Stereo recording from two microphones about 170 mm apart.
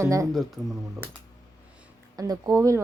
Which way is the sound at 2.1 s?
20° right (ahead or behind).